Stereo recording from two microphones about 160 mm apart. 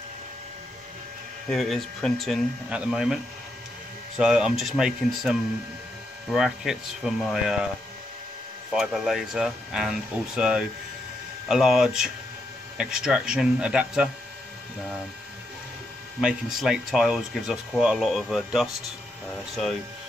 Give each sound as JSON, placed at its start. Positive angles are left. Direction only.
{"t": 1.5, "sound": "speech", "side_deg": 0}
{"t": 4.2, "sound": "speech", "side_deg": -5}
{"t": 8.7, "sound": "speech", "side_deg": -5}
{"t": 16.2, "sound": "speech", "side_deg": -5}